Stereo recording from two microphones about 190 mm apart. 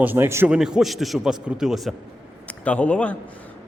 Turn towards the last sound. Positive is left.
turn(degrees=5)  # may be behind; listen again after turning